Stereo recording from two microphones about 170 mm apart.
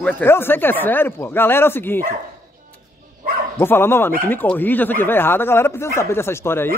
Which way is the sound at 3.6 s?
15° left (ahead or behind).